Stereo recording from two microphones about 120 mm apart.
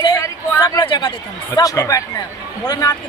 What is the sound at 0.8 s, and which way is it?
Speech, 45° left (ahead or behind).